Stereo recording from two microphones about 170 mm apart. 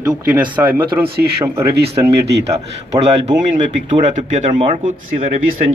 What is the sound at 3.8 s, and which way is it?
Speech, 40° right (ahead or behind).